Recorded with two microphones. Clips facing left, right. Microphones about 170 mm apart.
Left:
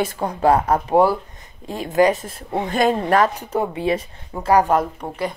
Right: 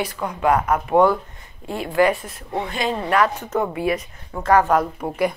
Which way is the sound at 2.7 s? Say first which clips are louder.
Left 6 dB; 45° left (ahead or behind).